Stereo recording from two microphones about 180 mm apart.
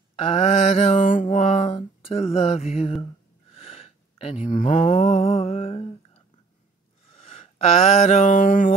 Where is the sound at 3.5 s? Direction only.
30° left (ahead or behind).